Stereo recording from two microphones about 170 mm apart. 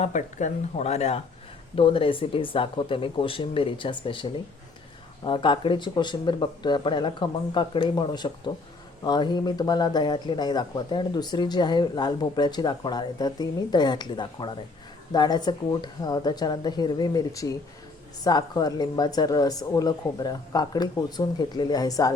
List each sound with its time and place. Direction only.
0.0 s speech: 45° left (ahead or behind); by 22.1 s 20° left (ahead or behind)